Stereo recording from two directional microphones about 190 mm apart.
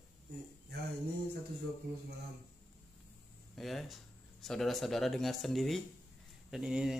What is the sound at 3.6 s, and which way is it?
Speech, centre (ahead or behind).